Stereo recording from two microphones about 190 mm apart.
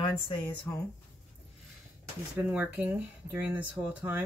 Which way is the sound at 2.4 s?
10° right (ahead or behind).